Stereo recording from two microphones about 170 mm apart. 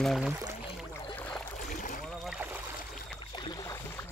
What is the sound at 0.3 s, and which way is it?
Speech, 15° right (ahead or behind).